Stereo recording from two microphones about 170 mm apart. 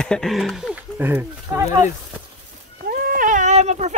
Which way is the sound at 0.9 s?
10° right (ahead or behind).